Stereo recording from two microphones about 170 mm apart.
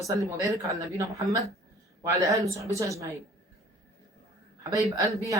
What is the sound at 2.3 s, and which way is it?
Speech, 20° right (ahead or behind).